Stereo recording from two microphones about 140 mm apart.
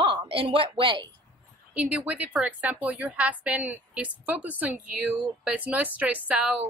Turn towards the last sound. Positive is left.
turn(degrees=-10)  # may be behind; listen again after turning